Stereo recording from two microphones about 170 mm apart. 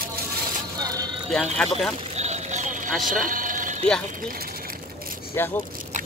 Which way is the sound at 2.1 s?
40° right (ahead or behind).